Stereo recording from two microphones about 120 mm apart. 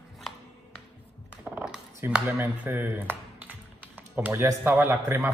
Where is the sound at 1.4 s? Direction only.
15° right (ahead or behind).